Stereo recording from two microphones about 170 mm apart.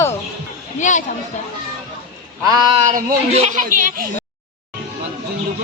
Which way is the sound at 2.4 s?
20° right (ahead or behind).